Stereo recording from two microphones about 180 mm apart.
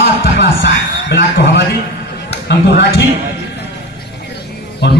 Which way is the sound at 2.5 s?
70° left (ahead or behind).